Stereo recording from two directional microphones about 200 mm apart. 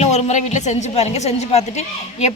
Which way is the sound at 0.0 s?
35° left (ahead or behind).